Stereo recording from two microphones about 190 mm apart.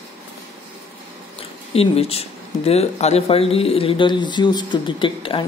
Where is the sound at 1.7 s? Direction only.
30° left (ahead or behind).